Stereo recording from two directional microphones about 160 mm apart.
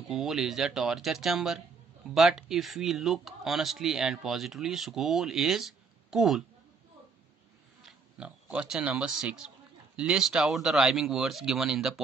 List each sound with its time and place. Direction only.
0.1 s speech: centre (ahead or behind)
7.8 s speech: 5° right (ahead or behind)